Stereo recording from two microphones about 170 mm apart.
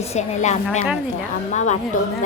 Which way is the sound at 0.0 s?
40° left (ahead or behind).